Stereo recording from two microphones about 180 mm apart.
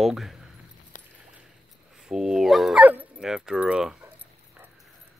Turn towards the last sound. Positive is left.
turn(degrees=-5)  # may be behind; listen again after turning